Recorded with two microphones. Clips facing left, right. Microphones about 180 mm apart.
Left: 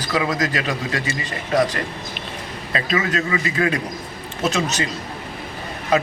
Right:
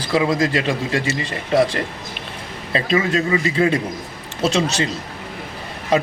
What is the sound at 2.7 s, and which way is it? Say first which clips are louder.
A man's voice: right 3 dB; 30° right (ahead or behind).